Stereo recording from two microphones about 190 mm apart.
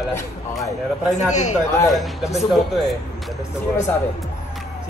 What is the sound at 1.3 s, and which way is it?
Speech, 40° left (ahead or behind).